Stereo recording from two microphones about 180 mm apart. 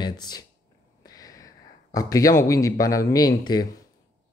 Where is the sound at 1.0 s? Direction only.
20° left (ahead or behind).